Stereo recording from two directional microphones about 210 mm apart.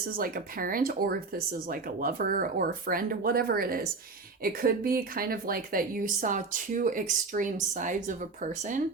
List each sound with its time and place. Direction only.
0.2 s speech: 45° right (ahead or behind)